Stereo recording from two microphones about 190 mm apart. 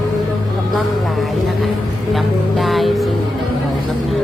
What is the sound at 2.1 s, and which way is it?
Music, centre (ahead or behind).